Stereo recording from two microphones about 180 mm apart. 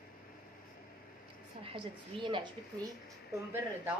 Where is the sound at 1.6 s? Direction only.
30° right (ahead or behind).